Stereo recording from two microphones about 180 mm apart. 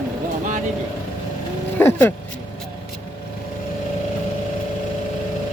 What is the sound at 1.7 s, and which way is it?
Vehicle, 15° left (ahead or behind).